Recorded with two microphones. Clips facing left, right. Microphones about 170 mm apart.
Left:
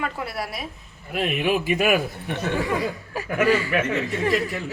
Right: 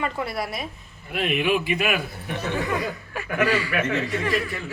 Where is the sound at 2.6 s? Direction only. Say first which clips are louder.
Left 2 dB; 25° left (ahead or behind).